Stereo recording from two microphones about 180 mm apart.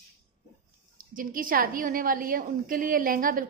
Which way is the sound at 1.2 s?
50° right (ahead or behind).